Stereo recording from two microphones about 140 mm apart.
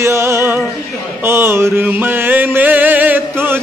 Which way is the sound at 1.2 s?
15° right (ahead or behind).